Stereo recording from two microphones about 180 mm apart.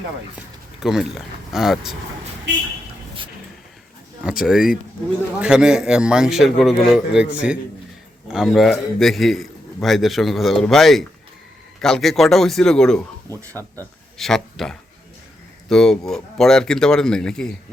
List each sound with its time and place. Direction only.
0.3 s speech: 5° right (ahead or behind)
4.2 s a man's voice: 5° right (ahead or behind)
13.6 s speech: 15° right (ahead or behind)
14.2 s a man's voice: centre (ahead or behind)